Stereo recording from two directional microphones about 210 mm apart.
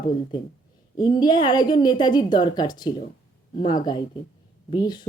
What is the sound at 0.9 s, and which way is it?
A woman's voice, 20° left (ahead or behind).